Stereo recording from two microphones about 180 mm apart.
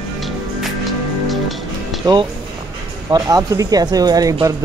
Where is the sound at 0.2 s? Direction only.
Centre (ahead or behind).